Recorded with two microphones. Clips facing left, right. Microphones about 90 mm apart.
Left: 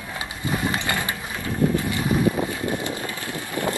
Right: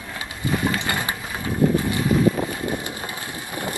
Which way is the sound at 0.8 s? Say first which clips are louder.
Right 1 dB; 20° right (ahead or behind).